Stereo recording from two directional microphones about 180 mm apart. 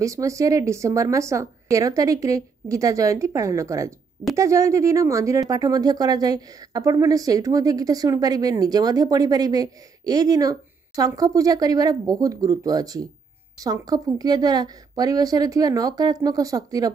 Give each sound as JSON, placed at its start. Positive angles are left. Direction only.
{"t": 0.0, "sound": "speech", "side_deg": -15}